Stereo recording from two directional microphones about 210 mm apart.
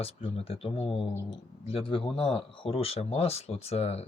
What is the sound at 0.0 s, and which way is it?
Speech, 25° left (ahead or behind).